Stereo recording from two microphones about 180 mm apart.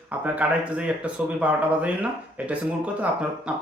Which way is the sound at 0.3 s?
5° right (ahead or behind).